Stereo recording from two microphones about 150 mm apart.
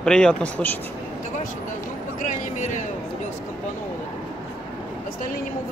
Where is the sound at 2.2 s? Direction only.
55° left (ahead or behind).